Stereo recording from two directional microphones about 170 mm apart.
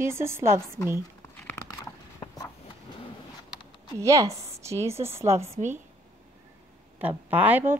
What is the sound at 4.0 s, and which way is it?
A woman's voice, 20° right (ahead or behind).